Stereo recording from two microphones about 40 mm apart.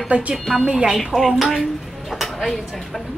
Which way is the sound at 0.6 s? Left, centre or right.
Centre.